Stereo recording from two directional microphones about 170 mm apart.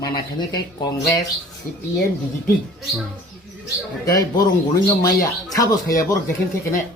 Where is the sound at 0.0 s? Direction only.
25° left (ahead or behind).